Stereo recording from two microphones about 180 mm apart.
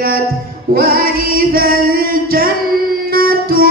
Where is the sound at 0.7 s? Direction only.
55° right (ahead or behind).